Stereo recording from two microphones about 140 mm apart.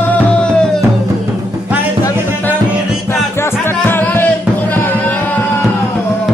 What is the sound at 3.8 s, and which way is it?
Music, 15° left (ahead or behind).